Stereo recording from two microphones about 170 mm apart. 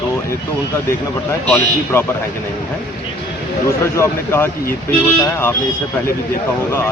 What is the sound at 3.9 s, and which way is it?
Speech, 15° left (ahead or behind).